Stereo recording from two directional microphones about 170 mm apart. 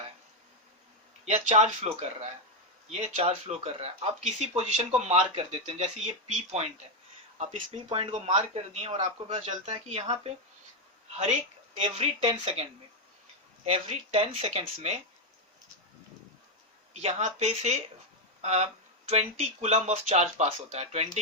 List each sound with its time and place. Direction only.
1.2 s speech: 40° right (ahead or behind)
11.8 s speech: 35° right (ahead or behind)
13.7 s speech: 35° right (ahead or behind)
16.9 s speech: 40° right (ahead or behind)